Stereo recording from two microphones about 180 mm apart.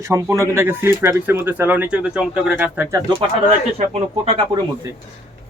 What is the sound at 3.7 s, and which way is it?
Speech, 35° right (ahead or behind).